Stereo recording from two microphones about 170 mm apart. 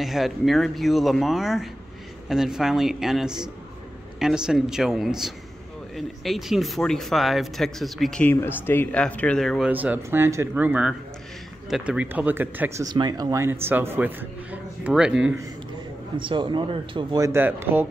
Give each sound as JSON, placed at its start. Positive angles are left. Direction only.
{"t": 0.0, "sound": "speech", "side_deg": 0}
{"t": 9.7, "sound": "a man's voice", "side_deg": -10}
{"t": 16.2, "sound": "speech", "side_deg": -30}